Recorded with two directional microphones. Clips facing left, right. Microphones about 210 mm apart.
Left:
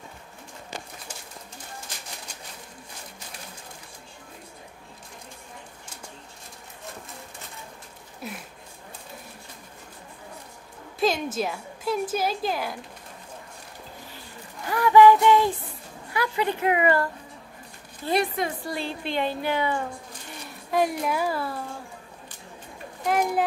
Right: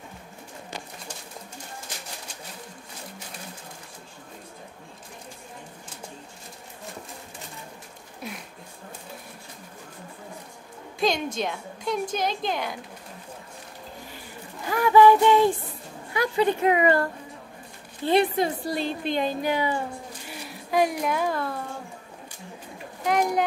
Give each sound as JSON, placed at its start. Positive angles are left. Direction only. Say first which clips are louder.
{"t": 8.2, "sound": "speech", "louder": "even", "side_deg": 5}
{"t": 11.0, "sound": "a woman's voice", "louder": "left 1 dB", "side_deg": 5}
{"t": 14.7, "sound": "a sound", "louder": "left 1 dB", "side_deg": -15}
{"t": 16.1, "sound": "speech", "louder": "right 3 dB", "side_deg": -20}
{"t": 18.0, "sound": "a woman's voice", "louder": "right 4 dB", "side_deg": -30}
{"t": 19.4, "sound": "a woman's voice", "louder": "right 1 dB", "side_deg": -15}
{"t": 20.4, "sound": "a woman's voice", "louder": "right 1 dB", "side_deg": 0}
{"t": 23.0, "sound": "a sound", "louder": "right 1 dB", "side_deg": 5}